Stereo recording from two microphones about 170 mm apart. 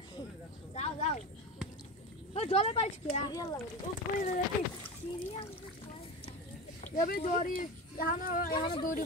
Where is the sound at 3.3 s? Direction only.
20° left (ahead or behind).